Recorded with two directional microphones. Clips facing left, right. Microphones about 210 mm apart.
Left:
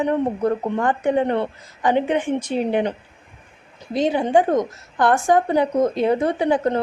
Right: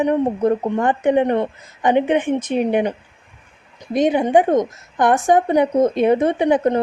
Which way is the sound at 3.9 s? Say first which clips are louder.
Right 3 dB; 20° right (ahead or behind).